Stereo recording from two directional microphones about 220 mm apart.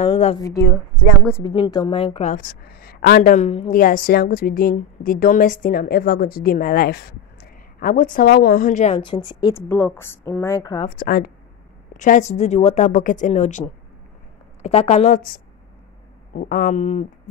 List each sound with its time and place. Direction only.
0.0 s a woman's voice: 25° left (ahead or behind)
1.2 s a woman's voice: 10° left (ahead or behind)
2.3 s a woman's voice: 45° left (ahead or behind)
3.8 s a woman's voice: 40° left (ahead or behind); by 10.9 s 15° left (ahead or behind)
11.0 s a woman's voice: 40° left (ahead or behind)